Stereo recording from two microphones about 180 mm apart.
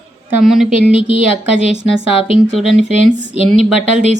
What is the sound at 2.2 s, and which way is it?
Speech, 30° left (ahead or behind).